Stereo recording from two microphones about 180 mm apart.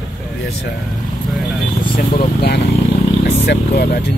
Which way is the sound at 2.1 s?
60° left (ahead or behind).